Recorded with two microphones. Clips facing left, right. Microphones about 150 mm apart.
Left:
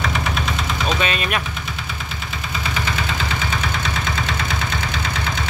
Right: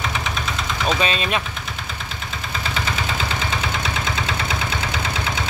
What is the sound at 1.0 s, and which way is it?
Speech, 25° right (ahead or behind).